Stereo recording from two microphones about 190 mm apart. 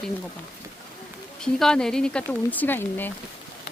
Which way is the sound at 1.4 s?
5° left (ahead or behind).